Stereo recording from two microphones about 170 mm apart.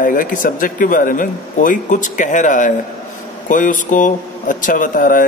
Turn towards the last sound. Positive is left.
turn(degrees=55)  # may be behind; listen again after turning